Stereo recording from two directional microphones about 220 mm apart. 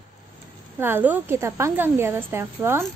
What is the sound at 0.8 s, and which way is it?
A woman's voice, 10° right (ahead or behind).